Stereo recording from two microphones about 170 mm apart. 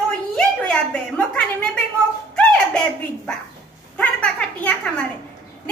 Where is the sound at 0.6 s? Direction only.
5° left (ahead or behind).